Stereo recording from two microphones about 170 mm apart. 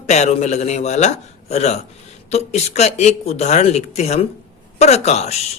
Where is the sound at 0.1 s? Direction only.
40° left (ahead or behind).